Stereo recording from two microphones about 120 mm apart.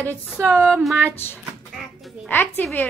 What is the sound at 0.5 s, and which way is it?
Speech, 5° left (ahead or behind).